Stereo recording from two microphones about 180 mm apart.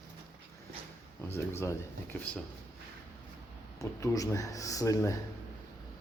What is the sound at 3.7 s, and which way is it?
Speech, 20° left (ahead or behind).